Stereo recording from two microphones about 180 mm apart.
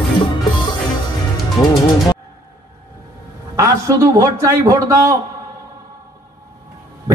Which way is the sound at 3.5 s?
15° right (ahead or behind).